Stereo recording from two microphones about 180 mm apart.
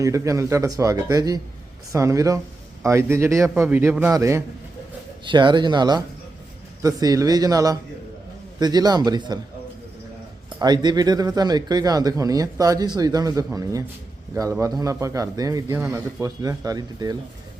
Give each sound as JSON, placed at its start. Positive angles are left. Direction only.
{"t": 0.0, "sound": "a man's voice", "side_deg": -15}
{"t": 10.6, "sound": "a man's voice", "side_deg": -20}